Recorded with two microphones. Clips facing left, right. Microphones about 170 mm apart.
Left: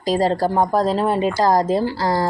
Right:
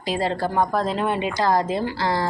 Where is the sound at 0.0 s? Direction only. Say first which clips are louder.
Left 6 dB; 40° left (ahead or behind).